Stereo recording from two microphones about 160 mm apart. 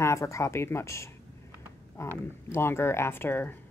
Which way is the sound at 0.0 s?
20° left (ahead or behind).